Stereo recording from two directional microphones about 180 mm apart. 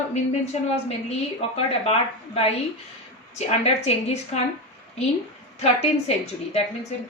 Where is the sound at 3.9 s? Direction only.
35° left (ahead or behind).